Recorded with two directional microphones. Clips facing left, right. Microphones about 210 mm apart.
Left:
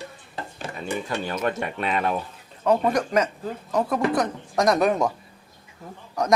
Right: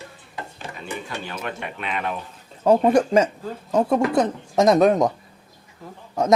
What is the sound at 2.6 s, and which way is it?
Speech, 30° right (ahead or behind).